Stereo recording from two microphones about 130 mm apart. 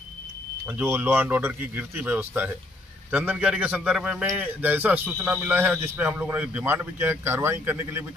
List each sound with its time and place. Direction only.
0.7 s a man's voice: 15° right (ahead or behind)